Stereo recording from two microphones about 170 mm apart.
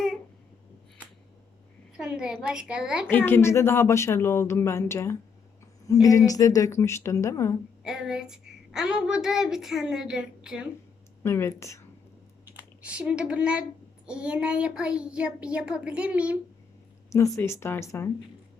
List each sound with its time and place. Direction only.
2.0 s child singing: 5° right (ahead or behind)
3.1 s speech: 10° left (ahead or behind)
7.9 s a woman's voice: 5° right (ahead or behind)
9.2 s child singing: 5° right (ahead or behind)
11.2 s speech: 15° left (ahead or behind)
12.5 s speech: 10° right (ahead or behind)
14.1 s child singing: 5° right (ahead or behind)
17.1 s speech: 20° left (ahead or behind)